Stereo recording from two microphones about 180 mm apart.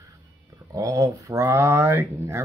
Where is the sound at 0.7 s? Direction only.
20° right (ahead or behind).